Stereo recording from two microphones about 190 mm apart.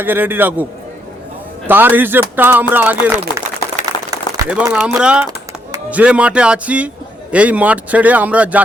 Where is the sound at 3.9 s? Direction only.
25° left (ahead or behind).